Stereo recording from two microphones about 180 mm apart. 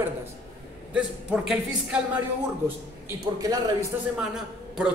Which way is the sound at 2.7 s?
15° right (ahead or behind).